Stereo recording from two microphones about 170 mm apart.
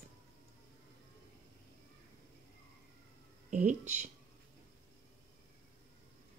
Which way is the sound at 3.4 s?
45° right (ahead or behind).